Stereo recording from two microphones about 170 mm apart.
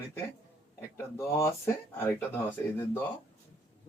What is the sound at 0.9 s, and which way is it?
Speech, 15° left (ahead or behind).